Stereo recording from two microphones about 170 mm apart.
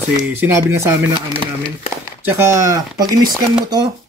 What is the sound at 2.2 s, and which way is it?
Speech, 15° right (ahead or behind).